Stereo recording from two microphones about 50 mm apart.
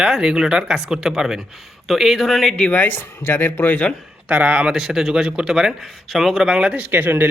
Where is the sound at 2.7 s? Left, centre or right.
Left.